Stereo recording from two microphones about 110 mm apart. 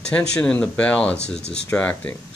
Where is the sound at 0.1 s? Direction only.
10° left (ahead or behind).